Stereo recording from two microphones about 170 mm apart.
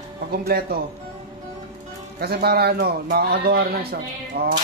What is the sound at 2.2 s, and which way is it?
A man's voice, 70° right (ahead or behind).